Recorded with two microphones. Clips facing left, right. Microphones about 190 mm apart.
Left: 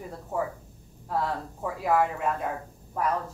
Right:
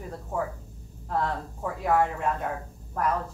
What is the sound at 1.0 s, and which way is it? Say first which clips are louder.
Speech: even; 5° left (ahead or behind).